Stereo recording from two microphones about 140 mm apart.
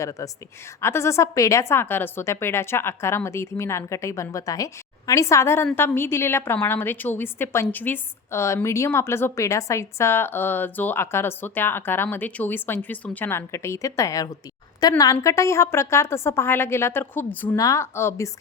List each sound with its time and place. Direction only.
0.0 s a woman's voice: 25° left (ahead or behind)